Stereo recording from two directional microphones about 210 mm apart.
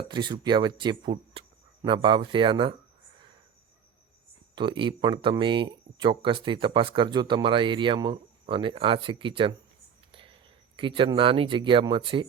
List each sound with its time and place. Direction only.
0.1 s speech: 20° right (ahead or behind)
4.5 s speech: 20° right (ahead or behind)
10.1 s whispering: 25° right (ahead or behind)
10.8 s speech: 25° right (ahead or behind)